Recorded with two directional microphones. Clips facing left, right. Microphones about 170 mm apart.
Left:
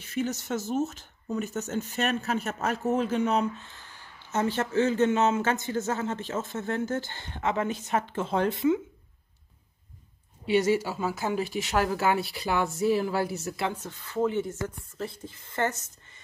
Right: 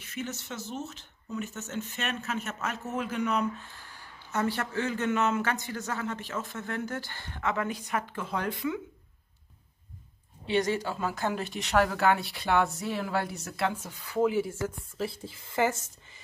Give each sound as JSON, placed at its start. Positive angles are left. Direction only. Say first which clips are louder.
{"t": 0.0, "sound": "speech", "louder": "left 7 dB", "side_deg": 35}
{"t": 10.4, "sound": "speech", "louder": "left 4 dB", "side_deg": 10}